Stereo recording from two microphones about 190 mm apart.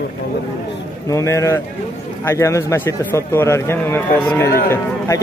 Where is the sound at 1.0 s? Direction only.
15° left (ahead or behind).